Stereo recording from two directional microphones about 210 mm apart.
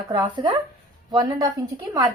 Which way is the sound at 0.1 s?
20° right (ahead or behind).